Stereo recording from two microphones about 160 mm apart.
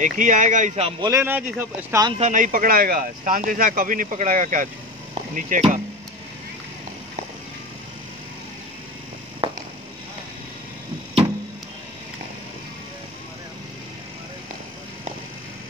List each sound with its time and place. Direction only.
0.0 s speech: 50° right (ahead or behind)
1.0 s speech: 15° right (ahead or behind)
2.1 s speech: 50° right (ahead or behind)
9.4 s a sound: 30° right (ahead or behind)